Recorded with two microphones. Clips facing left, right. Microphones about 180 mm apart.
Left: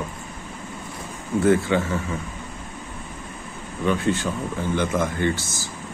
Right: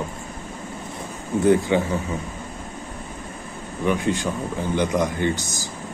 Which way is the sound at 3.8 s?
15° right (ahead or behind).